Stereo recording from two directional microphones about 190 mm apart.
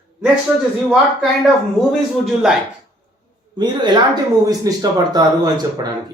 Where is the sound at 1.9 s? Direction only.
Centre (ahead or behind).